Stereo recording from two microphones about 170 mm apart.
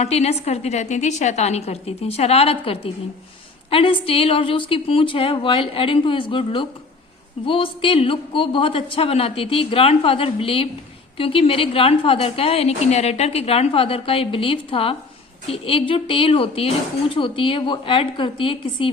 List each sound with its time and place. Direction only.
0.0 s a woman's voice: 40° left (ahead or behind)